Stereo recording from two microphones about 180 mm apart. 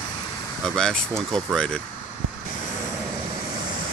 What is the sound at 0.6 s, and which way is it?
Speech, 5° left (ahead or behind).